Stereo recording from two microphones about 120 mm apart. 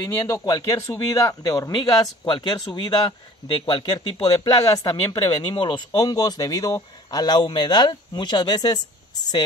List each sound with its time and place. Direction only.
0.0 s speech: 30° left (ahead or behind)
1.7 s speech: 40° left (ahead or behind)
4.6 s speech: 30° left (ahead or behind)